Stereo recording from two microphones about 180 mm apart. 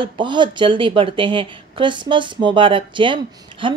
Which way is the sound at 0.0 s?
25° right (ahead or behind).